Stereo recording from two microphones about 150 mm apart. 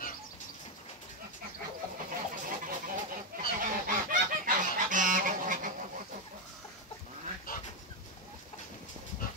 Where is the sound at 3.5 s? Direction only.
70° right (ahead or behind).